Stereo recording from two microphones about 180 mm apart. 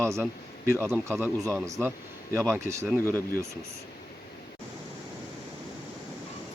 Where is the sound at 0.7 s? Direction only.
15° right (ahead or behind).